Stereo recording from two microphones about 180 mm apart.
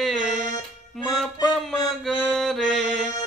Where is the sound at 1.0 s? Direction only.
Centre (ahead or behind).